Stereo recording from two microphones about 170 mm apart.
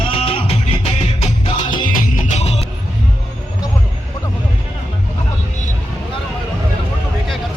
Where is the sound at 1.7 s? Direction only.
55° left (ahead or behind).